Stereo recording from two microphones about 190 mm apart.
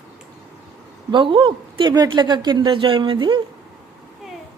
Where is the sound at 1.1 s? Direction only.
25° right (ahead or behind).